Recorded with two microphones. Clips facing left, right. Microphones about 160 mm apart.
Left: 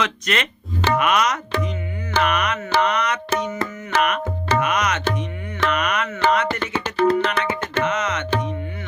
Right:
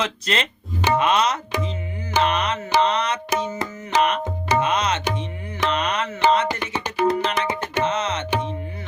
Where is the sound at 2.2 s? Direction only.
25° right (ahead or behind).